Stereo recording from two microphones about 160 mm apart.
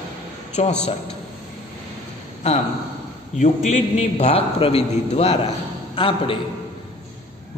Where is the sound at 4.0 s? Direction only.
40° left (ahead or behind).